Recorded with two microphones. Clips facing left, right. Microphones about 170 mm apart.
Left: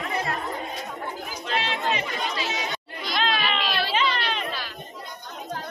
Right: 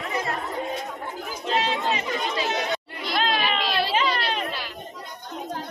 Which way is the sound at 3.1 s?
30° right (ahead or behind).